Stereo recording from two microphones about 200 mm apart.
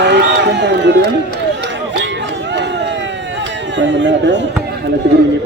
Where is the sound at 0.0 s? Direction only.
60° right (ahead or behind).